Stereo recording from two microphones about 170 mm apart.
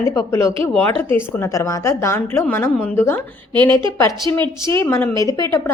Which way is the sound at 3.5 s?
25° right (ahead or behind).